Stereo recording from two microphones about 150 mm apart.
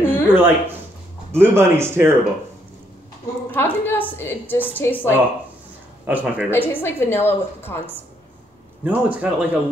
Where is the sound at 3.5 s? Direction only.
15° left (ahead or behind).